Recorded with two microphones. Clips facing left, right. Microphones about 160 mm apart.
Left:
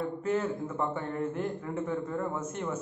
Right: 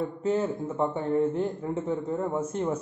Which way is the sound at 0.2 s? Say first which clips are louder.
Right 4 dB; 25° right (ahead or behind).